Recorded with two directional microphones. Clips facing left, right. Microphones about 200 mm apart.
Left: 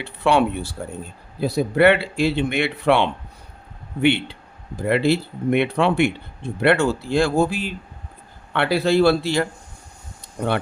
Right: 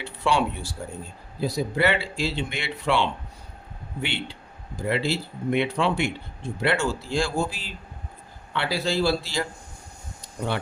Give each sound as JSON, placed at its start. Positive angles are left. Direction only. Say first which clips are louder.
{"t": 0.0, "sound": "speech", "louder": "left 5 dB", "side_deg": 60}